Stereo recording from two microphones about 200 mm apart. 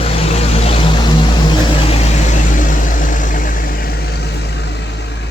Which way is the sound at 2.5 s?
40° left (ahead or behind).